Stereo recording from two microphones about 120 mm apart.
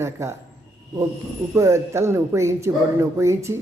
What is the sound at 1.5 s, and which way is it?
A woman's voice, 25° right (ahead or behind).